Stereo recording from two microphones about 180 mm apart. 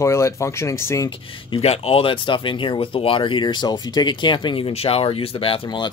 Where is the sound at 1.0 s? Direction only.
30° left (ahead or behind).